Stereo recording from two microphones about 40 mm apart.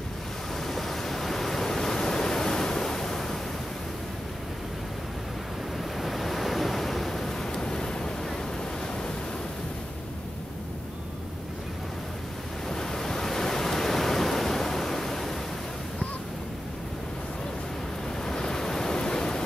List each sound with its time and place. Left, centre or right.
0.7 s waves: centre
5.9 s waves: centre
12.6 s waves: centre
18.2 s waves: centre